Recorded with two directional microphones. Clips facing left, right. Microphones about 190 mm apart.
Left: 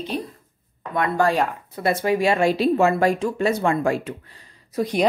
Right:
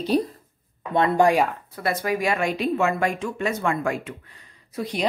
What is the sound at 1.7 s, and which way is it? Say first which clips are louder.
A woman's voice: left 4 dB; 25° left (ahead or behind).